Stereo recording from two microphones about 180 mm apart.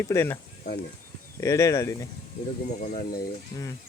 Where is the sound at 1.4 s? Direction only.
20° left (ahead or behind).